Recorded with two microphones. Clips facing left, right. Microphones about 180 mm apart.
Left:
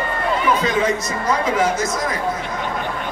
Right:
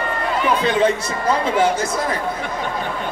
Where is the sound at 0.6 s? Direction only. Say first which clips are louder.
Right 2 dB; 30° right (ahead or behind).